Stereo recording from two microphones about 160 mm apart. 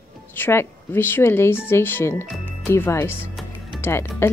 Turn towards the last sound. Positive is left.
turn(degrees=15)  # may be behind; listen again after turning